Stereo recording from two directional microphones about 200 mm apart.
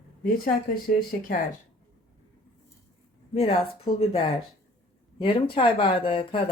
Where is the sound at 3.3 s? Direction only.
30° left (ahead or behind).